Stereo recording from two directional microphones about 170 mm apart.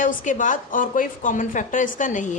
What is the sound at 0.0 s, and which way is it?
A woman's voice, 50° left (ahead or behind).